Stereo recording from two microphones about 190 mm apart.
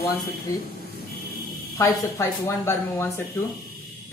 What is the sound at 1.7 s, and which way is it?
Speech, 15° left (ahead or behind).